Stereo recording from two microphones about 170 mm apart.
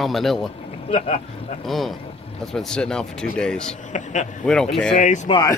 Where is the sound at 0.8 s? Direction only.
40° left (ahead or behind).